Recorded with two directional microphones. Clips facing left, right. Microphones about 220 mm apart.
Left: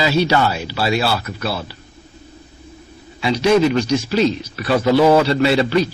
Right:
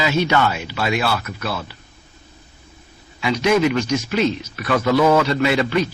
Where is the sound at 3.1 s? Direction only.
30° left (ahead or behind).